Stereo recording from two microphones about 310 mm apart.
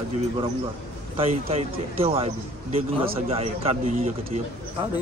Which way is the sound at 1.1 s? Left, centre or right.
Centre.